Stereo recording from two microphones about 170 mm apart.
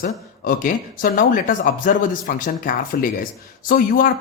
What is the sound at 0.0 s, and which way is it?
Speech, 55° left (ahead or behind).